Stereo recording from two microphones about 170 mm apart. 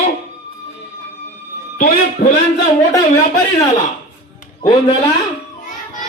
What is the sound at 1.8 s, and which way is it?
Speech, 60° left (ahead or behind).